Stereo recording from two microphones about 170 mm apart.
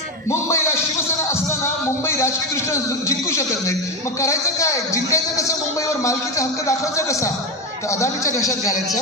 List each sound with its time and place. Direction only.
0.3 s a man's voice: 15° left (ahead or behind)
1.3 s music: 15° left (ahead or behind)
2.7 s a man's voice: 15° left (ahead or behind)